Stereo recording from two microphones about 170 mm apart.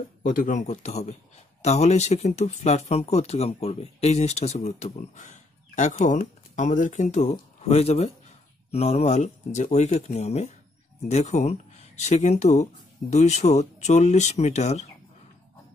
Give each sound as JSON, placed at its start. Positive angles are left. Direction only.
{"t": 0.2, "sound": "speech", "side_deg": 50}